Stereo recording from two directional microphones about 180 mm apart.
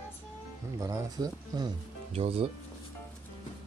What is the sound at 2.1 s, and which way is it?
Speech, 30° right (ahead or behind).